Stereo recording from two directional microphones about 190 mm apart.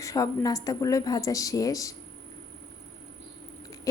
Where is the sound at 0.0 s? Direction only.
15° left (ahead or behind).